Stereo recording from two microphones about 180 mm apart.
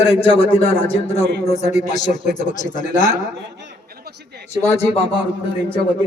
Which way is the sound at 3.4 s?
65° right (ahead or behind).